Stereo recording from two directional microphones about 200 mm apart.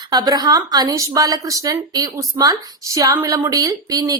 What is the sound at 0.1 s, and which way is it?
A woman's voice, 20° right (ahead or behind).